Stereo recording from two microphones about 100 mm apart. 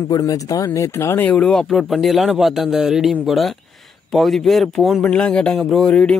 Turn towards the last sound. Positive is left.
turn(degrees=10)  # may be behind; listen again after turning